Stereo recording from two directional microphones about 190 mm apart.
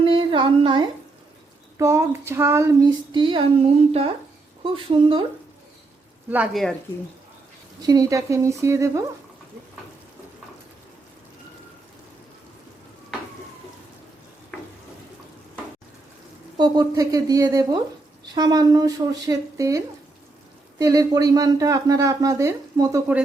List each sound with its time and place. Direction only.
0.0 s a sound: 25° right (ahead or behind)
1.8 s speech: 15° right (ahead or behind)
6.3 s speech: 5° right (ahead or behind)
7.8 s speech: 20° right (ahead or behind)
16.6 s speech: 20° right (ahead or behind)